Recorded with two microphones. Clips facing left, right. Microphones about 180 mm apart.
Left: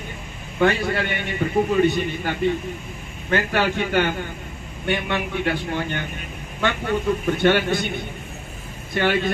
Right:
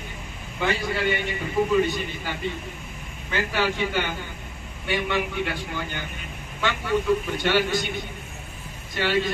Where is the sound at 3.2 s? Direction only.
60° left (ahead or behind).